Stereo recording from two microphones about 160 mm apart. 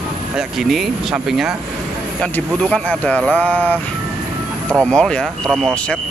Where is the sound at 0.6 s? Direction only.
Centre (ahead or behind).